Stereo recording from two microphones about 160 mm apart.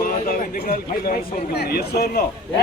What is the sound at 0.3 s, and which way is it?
A man's voice, 60° left (ahead or behind).